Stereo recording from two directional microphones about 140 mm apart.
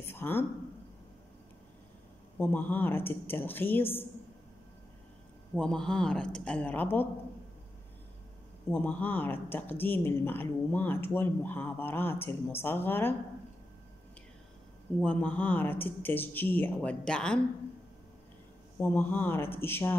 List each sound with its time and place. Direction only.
0.0 s a sound: 15° left (ahead or behind)
2.3 s speech: 15° left (ahead or behind)
5.6 s speech: 5° left (ahead or behind)
8.6 s speech: 15° left (ahead or behind)
15.0 s speech: 10° left (ahead or behind)
18.8 s speech: 15° left (ahead or behind)